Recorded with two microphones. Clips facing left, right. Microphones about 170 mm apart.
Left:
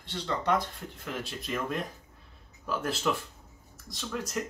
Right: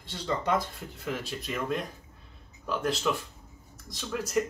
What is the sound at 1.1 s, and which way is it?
Speech, centre (ahead or behind).